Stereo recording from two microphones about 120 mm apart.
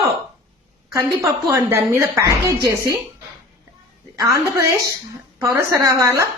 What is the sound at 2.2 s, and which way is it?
Speech, 30° right (ahead or behind).